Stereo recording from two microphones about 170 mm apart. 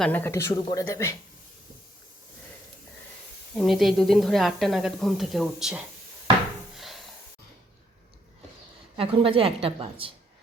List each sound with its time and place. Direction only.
0.0 s speech: 10° left (ahead or behind)
3.5 s speech: centre (ahead or behind)
6.7 s a sound: centre (ahead or behind)
9.0 s a woman's voice: 35° right (ahead or behind)